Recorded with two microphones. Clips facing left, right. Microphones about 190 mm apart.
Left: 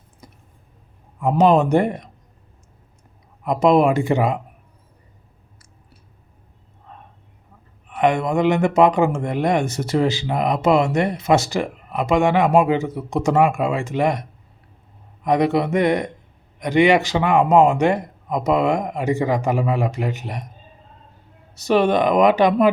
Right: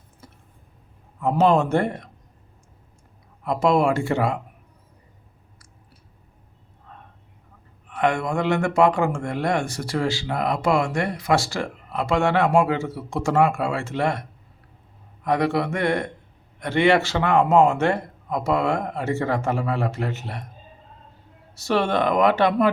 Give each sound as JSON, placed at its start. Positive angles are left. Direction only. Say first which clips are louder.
{"t": 0.2, "sound": "a sound", "louder": "left 2 dB", "side_deg": 15}
{"t": 1.2, "sound": "a man's voice", "louder": "left 3 dB", "side_deg": 15}
{"t": 3.4, "sound": "a man's voice", "louder": "left 4 dB", "side_deg": 20}
{"t": 6.9, "sound": "a sound", "louder": "left 3 dB", "side_deg": 20}
{"t": 7.9, "sound": "a man's voice", "louder": "left 4 dB", "side_deg": 20}
{"t": 21.5, "sound": "a man's voice", "louder": "left 5 dB", "side_deg": 15}